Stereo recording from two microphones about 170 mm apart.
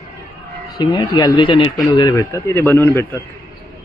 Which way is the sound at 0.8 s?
25° left (ahead or behind).